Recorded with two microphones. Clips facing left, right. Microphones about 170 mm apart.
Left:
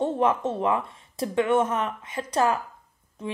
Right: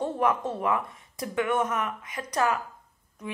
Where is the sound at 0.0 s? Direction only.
25° left (ahead or behind).